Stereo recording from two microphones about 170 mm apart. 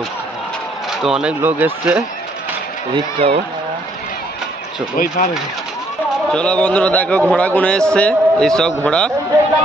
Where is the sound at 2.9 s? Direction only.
35° right (ahead or behind).